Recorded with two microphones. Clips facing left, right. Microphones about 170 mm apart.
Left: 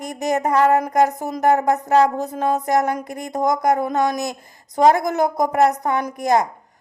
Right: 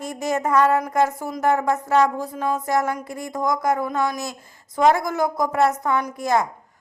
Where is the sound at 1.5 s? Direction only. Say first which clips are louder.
Left 3 dB; 40° left (ahead or behind).